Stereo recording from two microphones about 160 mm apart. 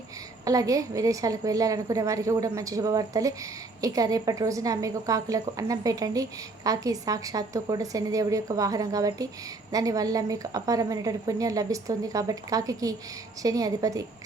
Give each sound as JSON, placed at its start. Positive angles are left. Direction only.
{"t": 0.4, "sound": "a woman's voice", "side_deg": -20}